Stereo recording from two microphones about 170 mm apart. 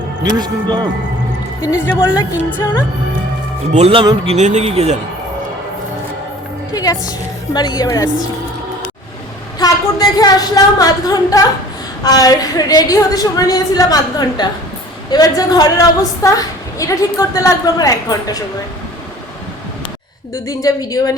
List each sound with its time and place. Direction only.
0.2 s speech: 25° right (ahead or behind)
1.6 s a woman's voice: 20° left (ahead or behind)
2.5 s music: 15° left (ahead or behind)
3.7 s a man's voice: 40° right (ahead or behind)
4.4 s a man's voice: 40° right (ahead or behind)
6.7 s a woman's voice: 20° left (ahead or behind)
9.6 s a woman's voice: 20° left (ahead or behind)
20.3 s a woman's voice: 20° left (ahead or behind)